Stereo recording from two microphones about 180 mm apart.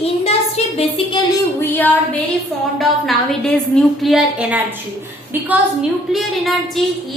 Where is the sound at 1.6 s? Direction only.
10° left (ahead or behind).